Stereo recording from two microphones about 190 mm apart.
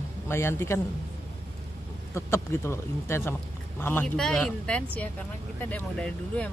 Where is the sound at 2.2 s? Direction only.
15° left (ahead or behind).